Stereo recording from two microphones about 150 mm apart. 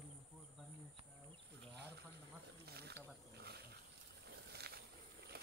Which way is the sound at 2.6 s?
90° right.